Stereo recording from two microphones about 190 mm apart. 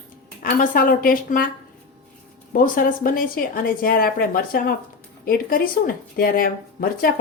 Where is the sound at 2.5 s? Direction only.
45° left (ahead or behind).